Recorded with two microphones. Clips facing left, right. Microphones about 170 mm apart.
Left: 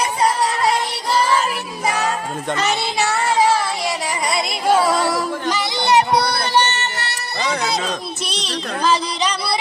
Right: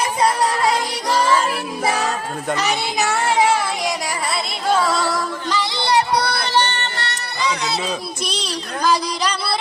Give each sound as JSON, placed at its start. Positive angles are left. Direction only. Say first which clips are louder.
{"t": 2.5, "sound": "a child's voice", "louder": "even", "side_deg": -5}
{"t": 4.7, "sound": "a sound", "louder": "left 2 dB", "side_deg": 10}
{"t": 5.1, "sound": "music", "louder": "left 1 dB", "side_deg": 15}